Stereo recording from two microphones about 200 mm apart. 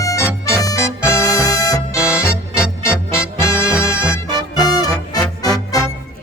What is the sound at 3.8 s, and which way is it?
Music, 15° left (ahead or behind).